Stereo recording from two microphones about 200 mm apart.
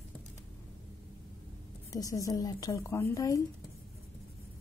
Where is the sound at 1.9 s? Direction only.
15° left (ahead or behind).